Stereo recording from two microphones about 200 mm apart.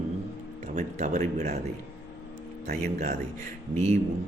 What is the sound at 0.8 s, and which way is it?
Speech, 35° right (ahead or behind).